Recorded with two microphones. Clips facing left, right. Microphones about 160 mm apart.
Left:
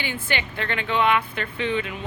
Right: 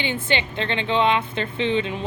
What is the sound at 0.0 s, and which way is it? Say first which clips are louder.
Speech: right 4 dB; 25° right (ahead or behind).